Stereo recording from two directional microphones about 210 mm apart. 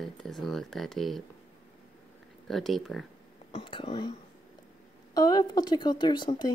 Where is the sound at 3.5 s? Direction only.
25° left (ahead or behind).